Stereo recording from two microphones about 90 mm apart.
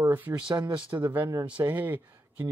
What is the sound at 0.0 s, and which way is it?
Speech, 25° right (ahead or behind).